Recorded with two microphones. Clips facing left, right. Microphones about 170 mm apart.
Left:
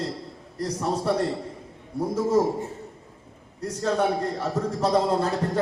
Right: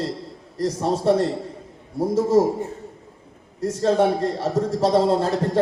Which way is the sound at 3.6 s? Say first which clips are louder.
Right 5 dB; 30° right (ahead or behind).